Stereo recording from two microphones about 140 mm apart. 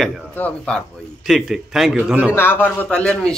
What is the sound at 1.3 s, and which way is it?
A man's voice, centre (ahead or behind).